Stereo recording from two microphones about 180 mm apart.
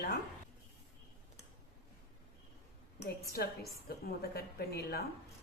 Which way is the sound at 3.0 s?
60° left (ahead or behind).